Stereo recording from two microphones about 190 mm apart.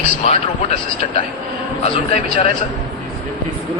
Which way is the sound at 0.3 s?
35° left (ahead or behind).